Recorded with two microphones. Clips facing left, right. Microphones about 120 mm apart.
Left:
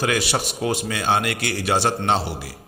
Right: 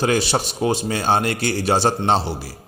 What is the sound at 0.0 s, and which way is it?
A man's voice, 30° right (ahead or behind).